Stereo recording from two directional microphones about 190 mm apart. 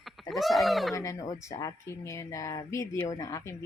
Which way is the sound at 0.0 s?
Centre (ahead or behind).